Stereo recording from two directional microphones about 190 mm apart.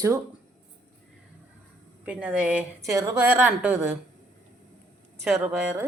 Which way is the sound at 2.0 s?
5° right (ahead or behind).